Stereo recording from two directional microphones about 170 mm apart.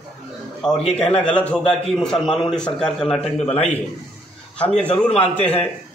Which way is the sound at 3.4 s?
35° left (ahead or behind).